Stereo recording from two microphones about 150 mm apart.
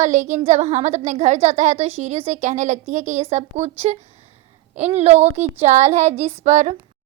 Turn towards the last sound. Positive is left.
turn(degrees=-50)  # may be behind; listen again after turning